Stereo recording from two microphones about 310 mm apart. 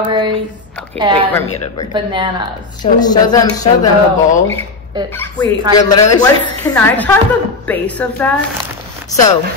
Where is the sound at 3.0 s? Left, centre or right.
Centre.